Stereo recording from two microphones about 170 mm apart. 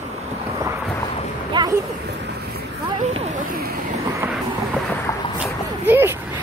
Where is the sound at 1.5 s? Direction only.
20° right (ahead or behind).